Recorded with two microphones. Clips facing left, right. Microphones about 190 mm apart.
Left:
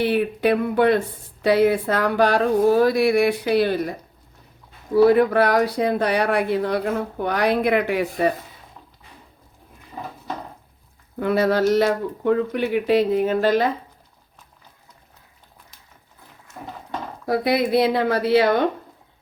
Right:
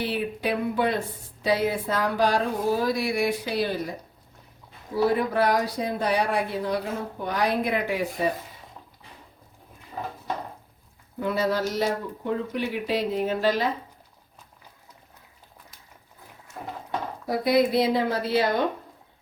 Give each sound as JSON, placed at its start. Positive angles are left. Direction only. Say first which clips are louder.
{"t": 0.0, "sound": "speech", "louder": "left 8 dB", "side_deg": 60}
{"t": 4.9, "sound": "speech", "louder": "left 8 dB", "side_deg": 65}
{"t": 11.2, "sound": "speech", "louder": "left 6 dB", "side_deg": 65}
{"t": 17.2, "sound": "speech", "louder": "left 2 dB", "side_deg": 65}